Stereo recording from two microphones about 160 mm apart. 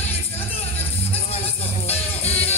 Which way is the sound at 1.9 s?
40° left (ahead or behind).